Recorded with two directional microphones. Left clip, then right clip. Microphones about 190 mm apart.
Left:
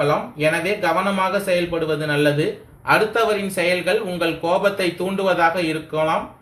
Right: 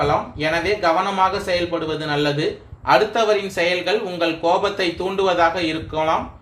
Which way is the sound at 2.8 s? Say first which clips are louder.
Right 1 dB; 45° right (ahead or behind).